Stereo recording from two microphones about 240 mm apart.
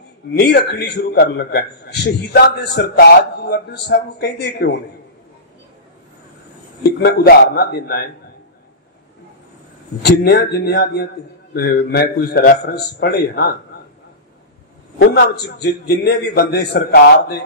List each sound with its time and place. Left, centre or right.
0.3 s a man's voice: left
6.8 s a man's voice: left
10.0 s a man's voice: left
15.0 s a man's voice: left